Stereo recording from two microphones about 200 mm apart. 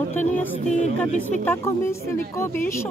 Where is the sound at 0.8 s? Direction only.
40° left (ahead or behind).